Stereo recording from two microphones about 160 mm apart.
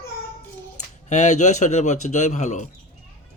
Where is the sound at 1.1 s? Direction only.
45° left (ahead or behind).